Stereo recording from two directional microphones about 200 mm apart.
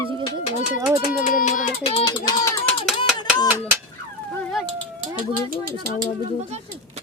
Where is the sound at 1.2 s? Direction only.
40° left (ahead or behind).